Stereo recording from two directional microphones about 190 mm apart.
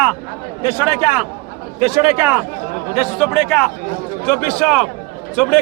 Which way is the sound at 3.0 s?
Centre (ahead or behind).